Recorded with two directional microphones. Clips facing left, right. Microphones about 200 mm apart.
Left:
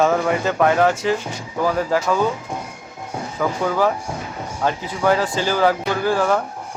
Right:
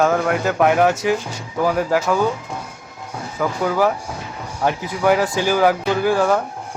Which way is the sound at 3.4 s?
10° right (ahead or behind).